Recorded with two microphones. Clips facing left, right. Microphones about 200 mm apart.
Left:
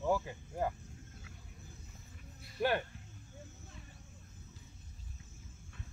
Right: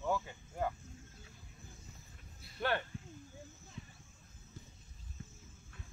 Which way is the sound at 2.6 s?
10° left (ahead or behind).